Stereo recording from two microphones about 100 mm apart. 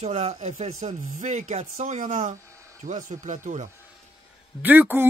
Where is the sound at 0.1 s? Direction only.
90° right.